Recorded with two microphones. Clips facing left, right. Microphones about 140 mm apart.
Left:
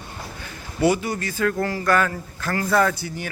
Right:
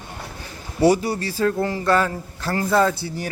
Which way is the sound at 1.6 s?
20° right (ahead or behind).